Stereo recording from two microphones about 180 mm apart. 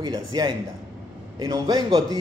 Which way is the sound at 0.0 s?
20° right (ahead or behind).